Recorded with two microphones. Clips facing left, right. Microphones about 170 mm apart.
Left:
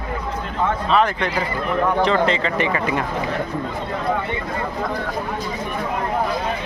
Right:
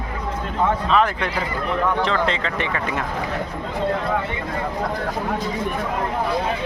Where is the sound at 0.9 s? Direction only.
5° right (ahead or behind).